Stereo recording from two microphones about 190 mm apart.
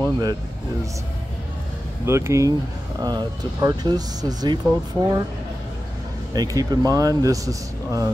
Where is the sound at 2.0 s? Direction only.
15° right (ahead or behind).